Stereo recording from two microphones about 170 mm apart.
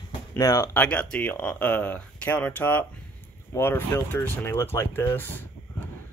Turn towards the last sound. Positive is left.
turn(degrees=10)  # may be behind; listen again after turning